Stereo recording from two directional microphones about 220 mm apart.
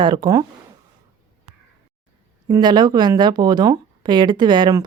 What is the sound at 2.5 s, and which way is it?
Speech, 20° right (ahead or behind).